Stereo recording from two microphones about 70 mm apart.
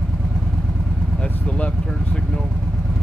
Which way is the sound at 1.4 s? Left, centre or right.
Centre.